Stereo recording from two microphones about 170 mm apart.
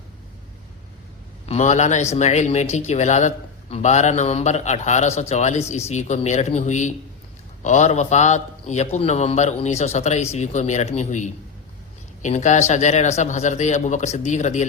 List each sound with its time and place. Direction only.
1.5 s a man's voice: 40° left (ahead or behind)